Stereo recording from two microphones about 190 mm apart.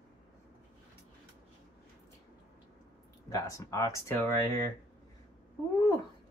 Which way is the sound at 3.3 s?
15° left (ahead or behind).